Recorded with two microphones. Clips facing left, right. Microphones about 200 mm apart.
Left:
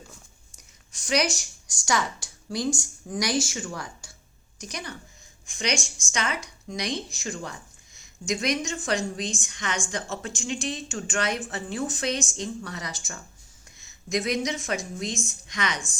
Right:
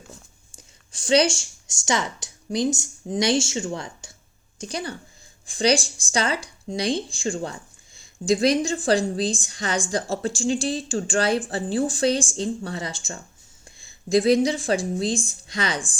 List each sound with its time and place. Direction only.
0.5 s a woman's voice: 30° right (ahead or behind)